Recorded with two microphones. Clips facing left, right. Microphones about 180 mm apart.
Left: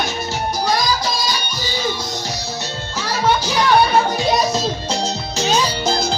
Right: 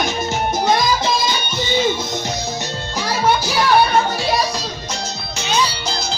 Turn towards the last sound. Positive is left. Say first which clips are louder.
# left 3 dB
turn(degrees=45)  # may be behind; listen again after turning